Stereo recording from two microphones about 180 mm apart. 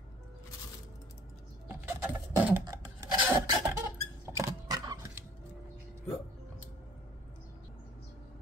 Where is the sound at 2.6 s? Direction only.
20° right (ahead or behind).